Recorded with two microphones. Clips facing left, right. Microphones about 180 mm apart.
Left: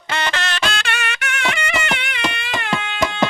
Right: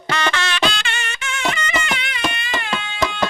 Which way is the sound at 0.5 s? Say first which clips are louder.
Right 1 dB; 50° left (ahead or behind).